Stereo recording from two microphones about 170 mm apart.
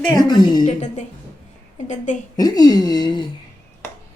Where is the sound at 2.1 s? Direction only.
45° left (ahead or behind).